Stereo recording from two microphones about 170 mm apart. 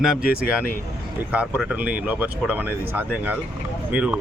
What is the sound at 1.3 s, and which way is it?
Speech, 10° right (ahead or behind).